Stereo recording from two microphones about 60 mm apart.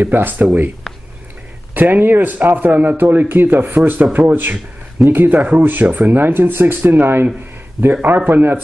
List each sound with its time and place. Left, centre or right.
0.0 s speech: right
1.7 s speech: right